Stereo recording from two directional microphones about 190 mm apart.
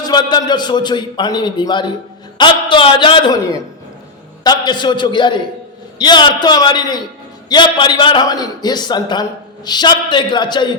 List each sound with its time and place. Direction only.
0.0 s a man's voice: 20° left (ahead or behind)